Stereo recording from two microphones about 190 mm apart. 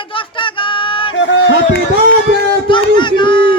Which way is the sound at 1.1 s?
75° left (ahead or behind).